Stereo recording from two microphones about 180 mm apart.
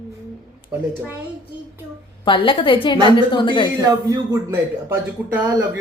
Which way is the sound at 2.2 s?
30° left (ahead or behind).